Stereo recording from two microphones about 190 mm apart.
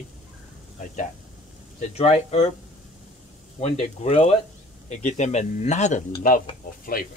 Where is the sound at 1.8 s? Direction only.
35° left (ahead or behind).